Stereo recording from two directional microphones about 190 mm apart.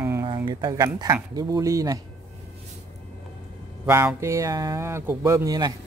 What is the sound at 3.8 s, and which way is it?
Speech, 15° right (ahead or behind).